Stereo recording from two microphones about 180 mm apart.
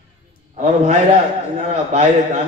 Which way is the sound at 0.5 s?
40° right (ahead or behind).